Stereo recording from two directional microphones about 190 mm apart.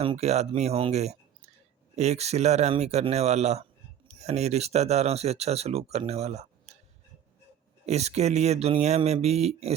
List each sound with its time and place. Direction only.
0.0 s speech: 30° right (ahead or behind)
7.9 s speech: 35° right (ahead or behind)